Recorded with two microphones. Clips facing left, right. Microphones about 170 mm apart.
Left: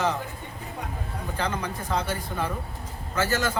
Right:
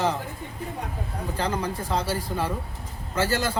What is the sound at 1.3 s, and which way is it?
Speech, 30° right (ahead or behind).